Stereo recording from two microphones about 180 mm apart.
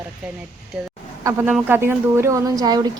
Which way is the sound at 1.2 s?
15° right (ahead or behind).